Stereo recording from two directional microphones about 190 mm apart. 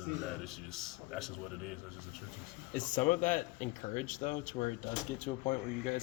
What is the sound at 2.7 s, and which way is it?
Speech, 45° left (ahead or behind).